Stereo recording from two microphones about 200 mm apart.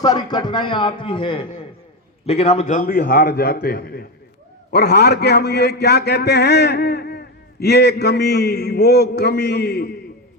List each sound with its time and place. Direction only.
0.0 s a man's voice: 20° left (ahead or behind); by 10.0 s 55° left (ahead or behind)